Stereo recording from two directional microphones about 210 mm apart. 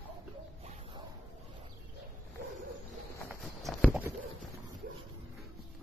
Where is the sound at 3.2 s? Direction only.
5° right (ahead or behind).